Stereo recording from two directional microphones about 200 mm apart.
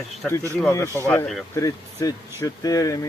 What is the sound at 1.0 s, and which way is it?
Speech, 10° left (ahead or behind).